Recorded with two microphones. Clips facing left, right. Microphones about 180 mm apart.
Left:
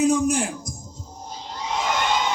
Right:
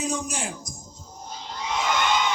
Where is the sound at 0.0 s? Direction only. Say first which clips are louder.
Left 10 dB; 60° left (ahead or behind).